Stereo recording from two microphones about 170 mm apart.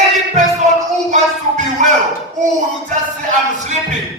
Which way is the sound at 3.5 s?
45° right (ahead or behind).